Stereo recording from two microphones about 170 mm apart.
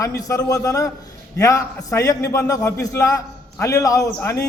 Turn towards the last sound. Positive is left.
turn(degrees=20)  # may be behind; listen again after turning